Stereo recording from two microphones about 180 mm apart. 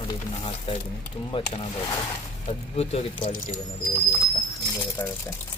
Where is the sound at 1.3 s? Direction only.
30° left (ahead or behind).